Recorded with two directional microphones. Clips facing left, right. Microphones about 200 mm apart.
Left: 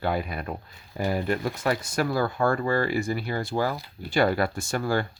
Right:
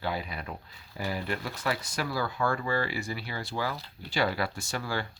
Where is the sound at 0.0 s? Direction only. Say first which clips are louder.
Left 6 dB; 50° left (ahead or behind).